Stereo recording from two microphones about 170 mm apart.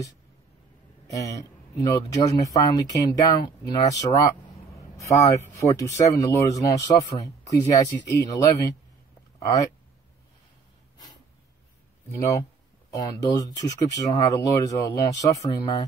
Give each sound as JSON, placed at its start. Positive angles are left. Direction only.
{"t": 1.1, "sound": "speech", "side_deg": 20}
{"t": 12.1, "sound": "speech", "side_deg": 20}